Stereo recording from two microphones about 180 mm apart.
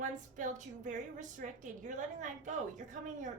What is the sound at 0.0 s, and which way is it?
A woman's voice, 45° right (ahead or behind).